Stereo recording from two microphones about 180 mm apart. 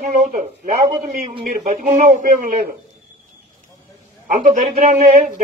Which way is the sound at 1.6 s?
40° right (ahead or behind).